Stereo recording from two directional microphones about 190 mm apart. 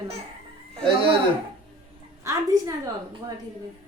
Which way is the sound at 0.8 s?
30° right (ahead or behind).